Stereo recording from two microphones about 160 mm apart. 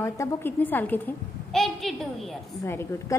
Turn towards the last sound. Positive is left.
turn(degrees=15)  # may be behind; listen again after turning